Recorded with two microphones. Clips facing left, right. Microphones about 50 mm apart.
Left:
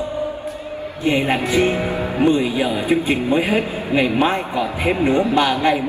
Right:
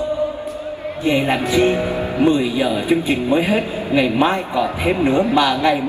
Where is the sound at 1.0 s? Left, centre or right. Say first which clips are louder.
Right 1 dB; left.